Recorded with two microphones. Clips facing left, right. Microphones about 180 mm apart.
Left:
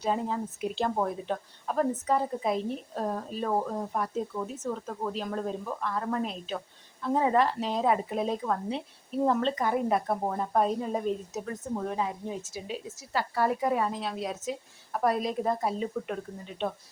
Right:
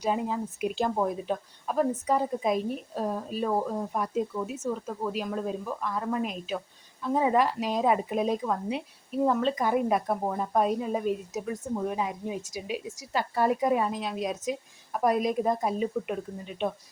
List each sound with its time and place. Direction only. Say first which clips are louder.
0.0 s speech: right 1 dB; 15° right (ahead or behind)
10.1 s speech: right 1 dB; centre (ahead or behind)
10.5 s speech: right 1 dB; 10° right (ahead or behind)